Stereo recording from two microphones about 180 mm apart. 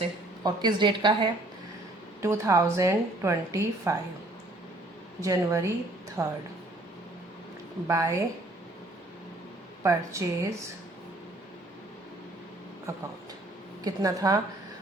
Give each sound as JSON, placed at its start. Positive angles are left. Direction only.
{"t": 0.4, "sound": "a woman's voice", "side_deg": -25}
{"t": 5.2, "sound": "a woman's voice", "side_deg": -15}
{"t": 7.9, "sound": "a woman's voice", "side_deg": -15}
{"t": 9.8, "sound": "a woman's voice", "side_deg": -15}
{"t": 13.8, "sound": "a woman's voice", "side_deg": -20}